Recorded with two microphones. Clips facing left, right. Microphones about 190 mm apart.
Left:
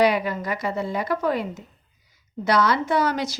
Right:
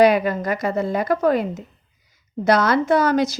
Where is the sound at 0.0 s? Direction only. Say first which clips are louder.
Right 5 dB; 50° right (ahead or behind).